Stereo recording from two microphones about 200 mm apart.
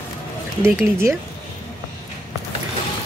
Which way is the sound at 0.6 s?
10° right (ahead or behind).